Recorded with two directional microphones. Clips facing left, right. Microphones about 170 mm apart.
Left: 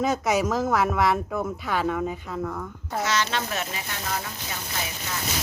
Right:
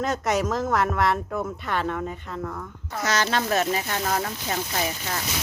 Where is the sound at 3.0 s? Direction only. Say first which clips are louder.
Right 2 dB; 40° right (ahead or behind).